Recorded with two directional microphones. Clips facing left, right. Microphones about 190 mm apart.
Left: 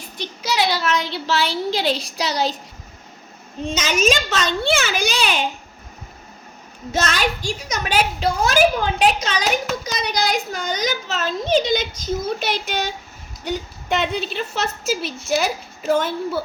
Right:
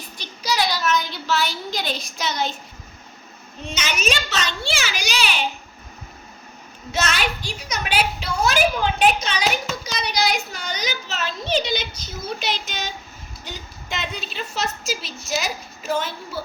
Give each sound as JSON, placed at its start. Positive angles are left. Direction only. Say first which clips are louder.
{"t": 0.2, "sound": "a woman's voice", "louder": "left 2 dB", "side_deg": 25}
{"t": 3.8, "sound": "a child's voice", "louder": "left 6 dB", "side_deg": 45}
{"t": 6.9, "sound": "a child's voice", "louder": "left 3 dB", "side_deg": 45}